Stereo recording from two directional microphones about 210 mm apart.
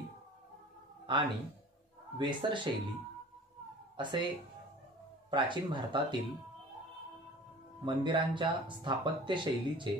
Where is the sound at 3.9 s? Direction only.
20° right (ahead or behind).